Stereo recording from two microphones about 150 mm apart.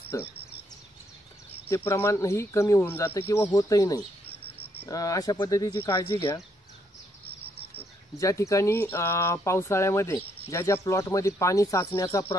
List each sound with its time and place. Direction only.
1.9 s speech: 15° left (ahead or behind)
8.2 s speech: 20° left (ahead or behind)